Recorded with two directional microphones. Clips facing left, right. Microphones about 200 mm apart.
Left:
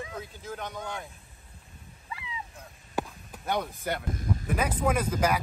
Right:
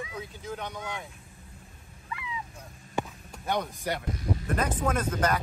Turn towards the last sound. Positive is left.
turn(degrees=10)  # may be behind; listen again after turning